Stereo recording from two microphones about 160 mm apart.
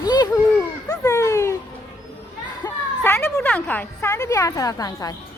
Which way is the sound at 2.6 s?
25° left (ahead or behind).